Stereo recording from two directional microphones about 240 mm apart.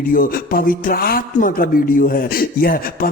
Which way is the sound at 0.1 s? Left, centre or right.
Left.